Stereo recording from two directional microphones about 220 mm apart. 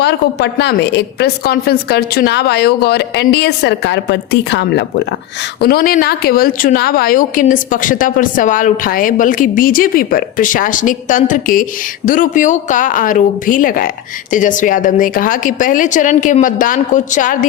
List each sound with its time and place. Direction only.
0.0 s a woman's voice: 50° left (ahead or behind)